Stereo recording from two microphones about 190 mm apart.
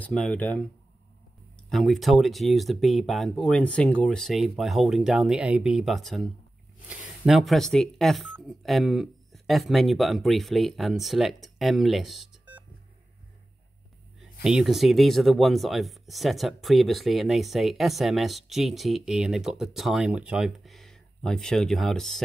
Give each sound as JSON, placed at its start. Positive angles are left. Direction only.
{"t": 0.0, "sound": "speech", "side_deg": 5}
{"t": 14.4, "sound": "speech", "side_deg": 0}